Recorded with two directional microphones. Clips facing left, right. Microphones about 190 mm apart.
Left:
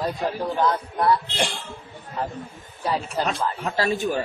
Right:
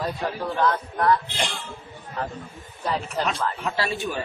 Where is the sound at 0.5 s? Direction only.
10° left (ahead or behind).